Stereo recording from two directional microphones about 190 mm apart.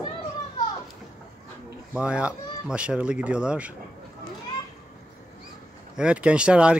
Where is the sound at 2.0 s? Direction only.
5° right (ahead or behind).